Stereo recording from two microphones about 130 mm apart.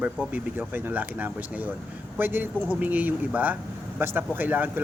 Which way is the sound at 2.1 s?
15° right (ahead or behind).